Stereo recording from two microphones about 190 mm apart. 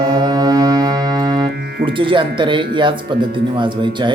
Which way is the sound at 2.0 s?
25° right (ahead or behind).